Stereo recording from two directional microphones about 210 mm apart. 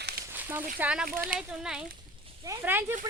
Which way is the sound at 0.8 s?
5° right (ahead or behind).